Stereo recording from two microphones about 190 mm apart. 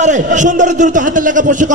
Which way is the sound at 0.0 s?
40° right (ahead or behind).